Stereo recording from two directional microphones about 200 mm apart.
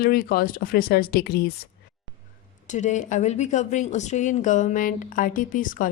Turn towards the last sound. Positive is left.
turn(degrees=40)  # may be behind; listen again after turning